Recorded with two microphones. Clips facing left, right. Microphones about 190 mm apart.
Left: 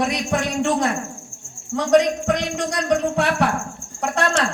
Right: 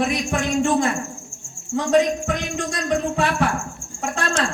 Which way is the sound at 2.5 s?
70° left (ahead or behind).